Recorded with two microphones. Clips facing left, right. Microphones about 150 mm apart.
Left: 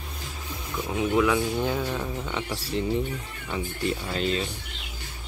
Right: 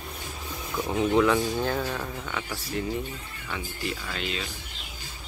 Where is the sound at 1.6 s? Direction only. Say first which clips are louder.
Left 1 dB; 15° left (ahead or behind).